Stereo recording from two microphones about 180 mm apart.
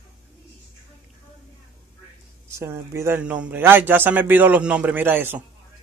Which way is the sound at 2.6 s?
15° right (ahead or behind).